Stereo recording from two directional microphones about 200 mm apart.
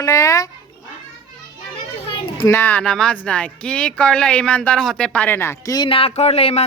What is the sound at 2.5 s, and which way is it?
A man's voice, 10° left (ahead or behind).